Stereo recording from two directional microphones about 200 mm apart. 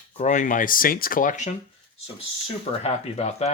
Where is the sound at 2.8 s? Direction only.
30° left (ahead or behind).